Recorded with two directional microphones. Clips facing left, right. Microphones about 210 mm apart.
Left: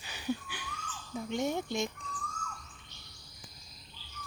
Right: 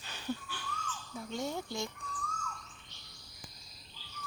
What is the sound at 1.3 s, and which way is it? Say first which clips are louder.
Speech: left 5 dB; 20° left (ahead or behind).